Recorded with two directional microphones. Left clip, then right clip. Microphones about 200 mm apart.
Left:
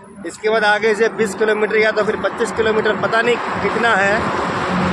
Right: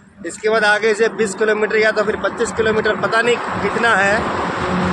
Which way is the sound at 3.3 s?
45° left (ahead or behind).